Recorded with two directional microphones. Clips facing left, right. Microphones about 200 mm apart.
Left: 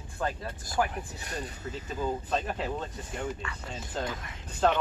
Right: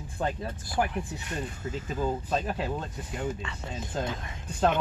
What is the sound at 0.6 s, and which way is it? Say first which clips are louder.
Speech: right 1 dB; 40° left (ahead or behind).